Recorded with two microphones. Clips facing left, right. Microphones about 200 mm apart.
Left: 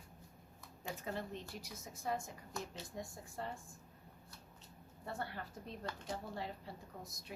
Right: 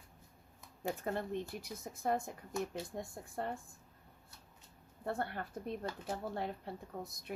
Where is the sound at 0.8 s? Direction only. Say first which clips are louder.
Right 6 dB; 55° right (ahead or behind).